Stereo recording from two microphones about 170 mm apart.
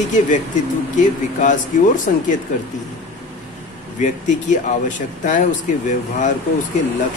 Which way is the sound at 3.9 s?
45° left (ahead or behind).